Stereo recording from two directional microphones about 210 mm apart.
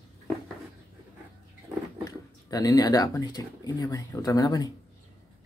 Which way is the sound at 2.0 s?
15° left (ahead or behind).